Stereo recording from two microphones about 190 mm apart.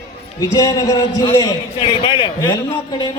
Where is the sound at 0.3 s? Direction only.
15° left (ahead or behind).